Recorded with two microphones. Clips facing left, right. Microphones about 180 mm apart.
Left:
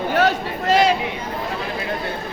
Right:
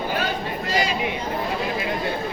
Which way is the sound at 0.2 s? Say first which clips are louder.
Left 7 dB; 70° left (ahead or behind).